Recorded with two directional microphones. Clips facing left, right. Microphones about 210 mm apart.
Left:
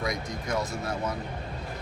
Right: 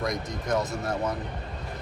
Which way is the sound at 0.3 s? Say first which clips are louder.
Right 3 dB; 20° right (ahead or behind).